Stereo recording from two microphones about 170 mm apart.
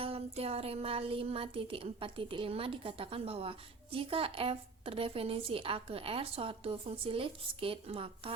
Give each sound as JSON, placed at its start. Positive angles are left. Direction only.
{"t": 0.0, "sound": "speech", "side_deg": -35}